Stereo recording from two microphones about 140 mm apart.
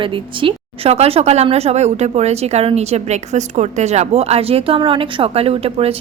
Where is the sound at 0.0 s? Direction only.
40° right (ahead or behind).